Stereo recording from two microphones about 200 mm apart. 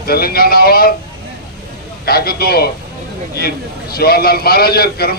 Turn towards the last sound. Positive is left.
turn(degrees=50)  # may be behind; listen again after turning